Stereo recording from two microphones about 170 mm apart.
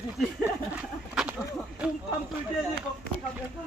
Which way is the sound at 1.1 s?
5° right (ahead or behind).